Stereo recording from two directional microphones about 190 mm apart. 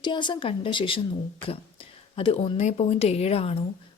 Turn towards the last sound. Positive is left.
turn(degrees=30)  # may be behind; listen again after turning